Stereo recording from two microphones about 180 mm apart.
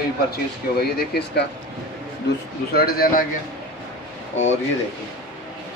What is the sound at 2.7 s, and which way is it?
Speech, 55° left (ahead or behind).